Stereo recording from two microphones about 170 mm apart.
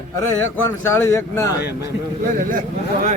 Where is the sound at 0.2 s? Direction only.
15° left (ahead or behind).